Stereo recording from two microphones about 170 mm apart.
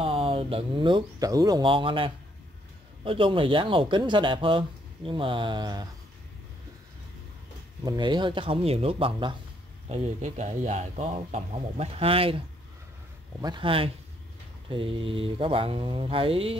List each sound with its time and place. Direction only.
0.0 s speech: 30° right (ahead or behind)
7.8 s speech: 25° right (ahead or behind)